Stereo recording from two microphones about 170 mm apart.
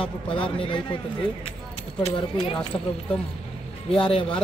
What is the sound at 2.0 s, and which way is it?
Speech, 30° left (ahead or behind).